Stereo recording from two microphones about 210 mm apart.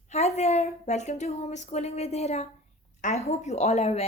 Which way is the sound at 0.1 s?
30° left (ahead or behind).